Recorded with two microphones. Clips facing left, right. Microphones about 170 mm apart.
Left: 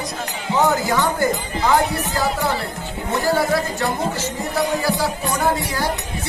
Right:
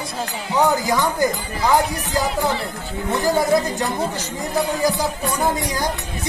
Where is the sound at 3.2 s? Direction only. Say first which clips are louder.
Right 2 dB; 15° right (ahead or behind).